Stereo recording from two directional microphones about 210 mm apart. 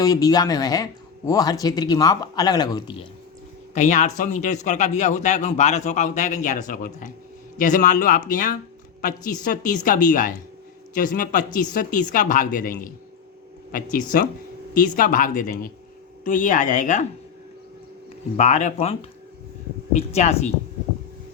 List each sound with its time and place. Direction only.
0.0 s speech: 15° left (ahead or behind)
3.8 s a man's voice: 35° left (ahead or behind)
18.3 s a man's voice: 35° left (ahead or behind)